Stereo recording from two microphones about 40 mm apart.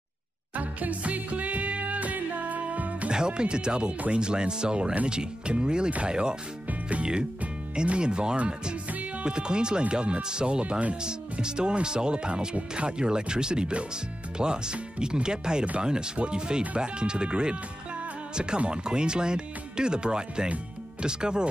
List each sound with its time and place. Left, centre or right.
0.6 s music: right
3.1 s speech: right
7.7 s speech: right